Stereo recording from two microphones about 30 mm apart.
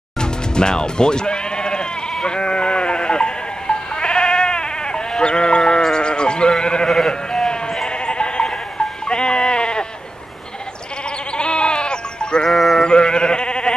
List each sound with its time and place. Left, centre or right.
0.2 s music: left
2.2 s sheep: left
11.3 s sheep: left
12.4 s sheep: centre
12.8 s sheep: left